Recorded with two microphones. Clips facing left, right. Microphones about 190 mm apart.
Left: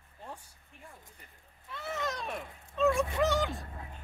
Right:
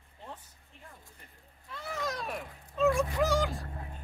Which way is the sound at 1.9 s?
Centre (ahead or behind).